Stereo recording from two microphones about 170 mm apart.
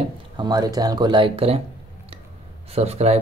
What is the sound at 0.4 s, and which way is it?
Speech, 25° right (ahead or behind).